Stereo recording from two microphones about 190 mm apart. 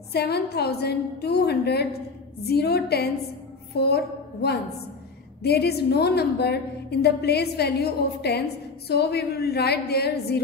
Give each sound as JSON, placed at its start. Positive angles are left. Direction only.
{"t": 0.1, "sound": "a woman's voice", "side_deg": 60}